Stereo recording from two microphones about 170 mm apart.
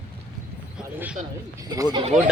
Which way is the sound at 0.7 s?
5° right (ahead or behind).